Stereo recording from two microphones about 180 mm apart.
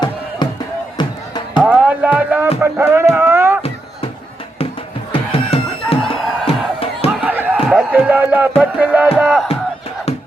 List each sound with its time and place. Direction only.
0.4 s music: 25° left (ahead or behind)
1.6 s music: 10° right (ahead or behind)
2.6 s a sound: 10° right (ahead or behind)
5.1 s music: 30° left (ahead or behind)
6.0 s music: centre (ahead or behind)
6.4 s music: 30° left (ahead or behind)
7.2 s music: 10° right (ahead or behind)